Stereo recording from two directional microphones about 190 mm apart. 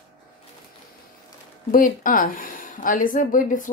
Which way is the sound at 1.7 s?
45° left (ahead or behind).